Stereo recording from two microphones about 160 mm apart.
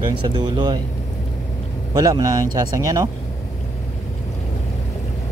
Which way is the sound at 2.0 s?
25° right (ahead or behind).